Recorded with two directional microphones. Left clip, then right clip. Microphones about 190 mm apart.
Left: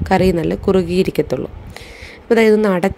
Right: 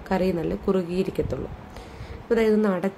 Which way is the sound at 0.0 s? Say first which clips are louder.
Left 10 dB; 45° left (ahead or behind).